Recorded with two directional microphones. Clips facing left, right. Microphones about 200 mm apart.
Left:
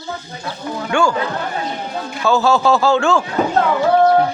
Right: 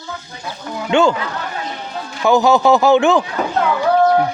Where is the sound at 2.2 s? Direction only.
15° right (ahead or behind).